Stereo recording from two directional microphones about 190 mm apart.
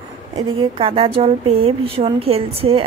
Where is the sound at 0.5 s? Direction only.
30° right (ahead or behind).